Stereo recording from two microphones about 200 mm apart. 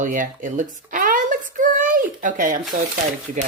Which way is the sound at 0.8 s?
40° right (ahead or behind).